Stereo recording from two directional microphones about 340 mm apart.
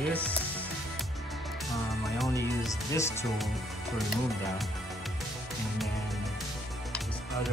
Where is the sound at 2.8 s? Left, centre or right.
Centre.